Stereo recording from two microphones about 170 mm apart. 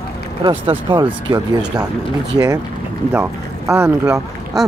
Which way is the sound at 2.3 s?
20° right (ahead or behind).